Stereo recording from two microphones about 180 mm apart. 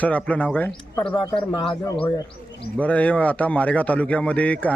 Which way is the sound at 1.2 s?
25° left (ahead or behind).